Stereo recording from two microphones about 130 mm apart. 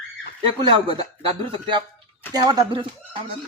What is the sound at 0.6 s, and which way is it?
A man's voice, 40° right (ahead or behind).